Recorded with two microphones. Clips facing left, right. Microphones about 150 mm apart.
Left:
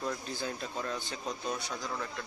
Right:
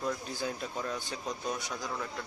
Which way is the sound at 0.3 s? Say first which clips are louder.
Right 1 dB; 10° right (ahead or behind).